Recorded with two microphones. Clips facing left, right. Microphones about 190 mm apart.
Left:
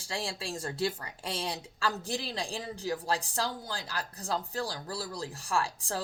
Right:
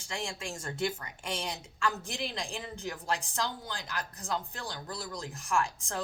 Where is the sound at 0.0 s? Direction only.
35° left (ahead or behind).